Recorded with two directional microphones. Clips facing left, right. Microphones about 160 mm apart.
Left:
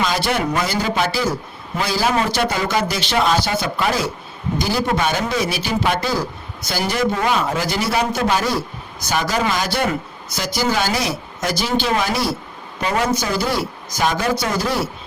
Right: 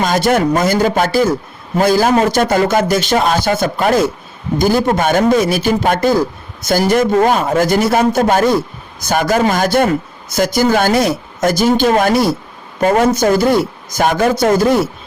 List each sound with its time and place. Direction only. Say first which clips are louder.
0.0 s a man's voice: right 7 dB; 45° right (ahead or behind)